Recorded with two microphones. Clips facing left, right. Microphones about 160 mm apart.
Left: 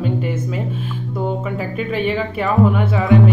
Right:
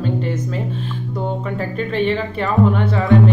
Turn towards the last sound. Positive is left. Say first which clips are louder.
# even
turn(degrees=5)  # may be behind; listen again after turning